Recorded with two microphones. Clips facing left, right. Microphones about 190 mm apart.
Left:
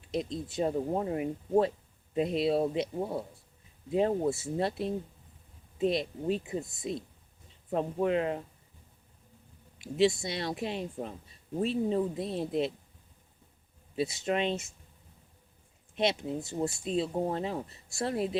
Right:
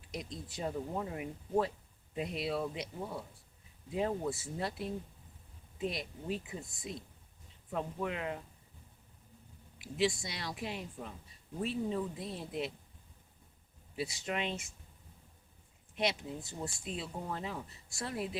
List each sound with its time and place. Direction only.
0.1 s speech: 25° left (ahead or behind)
0.7 s speech: 35° left (ahead or behind)
9.7 s speech: 25° left (ahead or behind)
13.9 s speech: 25° left (ahead or behind)
16.0 s speech: 25° left (ahead or behind)